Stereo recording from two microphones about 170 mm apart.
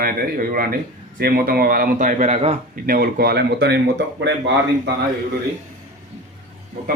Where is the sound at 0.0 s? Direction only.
60° right (ahead or behind); by 2.6 s 40° right (ahead or behind).